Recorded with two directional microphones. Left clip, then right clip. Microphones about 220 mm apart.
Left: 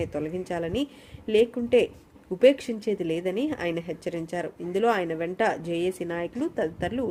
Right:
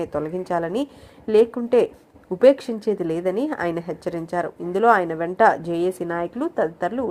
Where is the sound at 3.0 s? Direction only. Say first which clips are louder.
Right 5 dB; 45° right (ahead or behind).